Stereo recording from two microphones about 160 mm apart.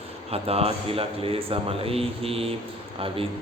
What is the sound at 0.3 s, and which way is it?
Mantra, 40° right (ahead or behind).